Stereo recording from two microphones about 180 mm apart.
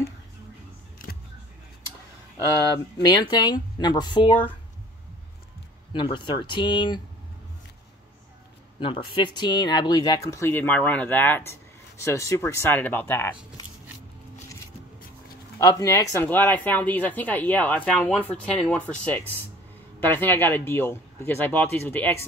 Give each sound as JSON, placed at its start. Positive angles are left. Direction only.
{"t": 3.1, "sound": "speech", "side_deg": 20}
{"t": 5.9, "sound": "speech", "side_deg": 25}
{"t": 8.7, "sound": "speech", "side_deg": 30}
{"t": 13.6, "sound": "a sound", "side_deg": 20}
{"t": 15.6, "sound": "speech", "side_deg": 15}